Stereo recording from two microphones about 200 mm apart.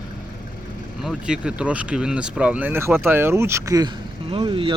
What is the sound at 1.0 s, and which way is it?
Speech, 5° right (ahead or behind).